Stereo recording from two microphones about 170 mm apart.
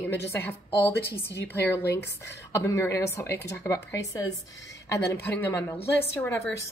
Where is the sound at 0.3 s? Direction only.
15° left (ahead or behind).